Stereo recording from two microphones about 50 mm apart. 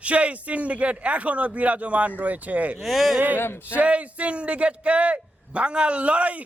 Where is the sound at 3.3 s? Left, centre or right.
Left.